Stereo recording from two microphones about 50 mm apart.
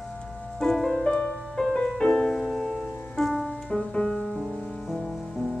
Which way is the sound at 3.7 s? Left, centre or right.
Centre.